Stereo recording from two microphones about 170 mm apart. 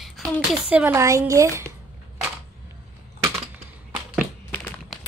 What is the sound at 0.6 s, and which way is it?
A woman's voice, 10° right (ahead or behind).